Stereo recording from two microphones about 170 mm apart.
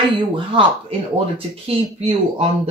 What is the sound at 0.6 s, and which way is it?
Speech, 35° right (ahead or behind).